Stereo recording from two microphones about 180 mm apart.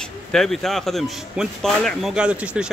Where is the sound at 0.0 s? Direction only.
5° left (ahead or behind).